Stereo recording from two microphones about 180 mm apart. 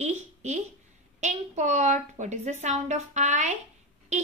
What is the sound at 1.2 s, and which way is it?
A woman's voice, 40° right (ahead or behind).